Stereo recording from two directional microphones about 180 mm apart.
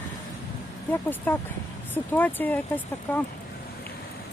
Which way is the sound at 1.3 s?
10° left (ahead or behind).